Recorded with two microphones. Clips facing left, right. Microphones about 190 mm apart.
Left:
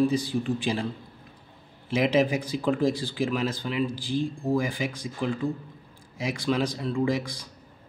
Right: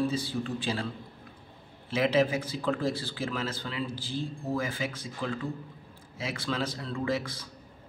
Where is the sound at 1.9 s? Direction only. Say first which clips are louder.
Left 3 dB; 15° left (ahead or behind).